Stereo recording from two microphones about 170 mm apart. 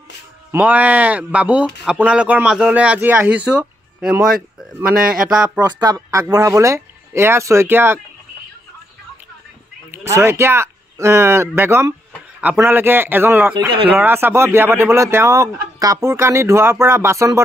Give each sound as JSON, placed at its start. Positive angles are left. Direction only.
{"t": 0.5, "sound": "speech", "side_deg": -10}
{"t": 5.6, "sound": "speech", "side_deg": -25}
{"t": 9.8, "sound": "speech", "side_deg": -15}